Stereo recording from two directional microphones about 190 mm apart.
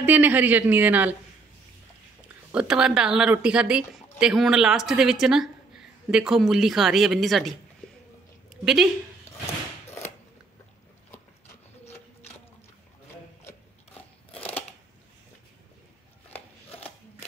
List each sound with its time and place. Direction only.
0.0 s speech: 10° right (ahead or behind)
2.5 s speech: 5° right (ahead or behind)
13.9 s a sound: 30° left (ahead or behind)